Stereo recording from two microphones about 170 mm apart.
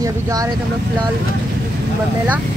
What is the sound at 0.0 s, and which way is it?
Speech, 20° right (ahead or behind).